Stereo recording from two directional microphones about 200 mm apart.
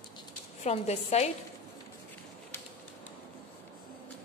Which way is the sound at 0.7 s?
35° left (ahead or behind).